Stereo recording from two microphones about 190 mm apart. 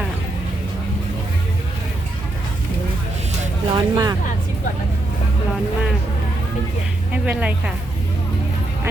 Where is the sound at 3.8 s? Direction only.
20° right (ahead or behind).